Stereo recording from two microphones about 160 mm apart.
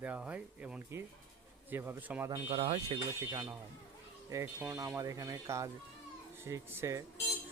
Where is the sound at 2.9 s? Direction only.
20° right (ahead or behind).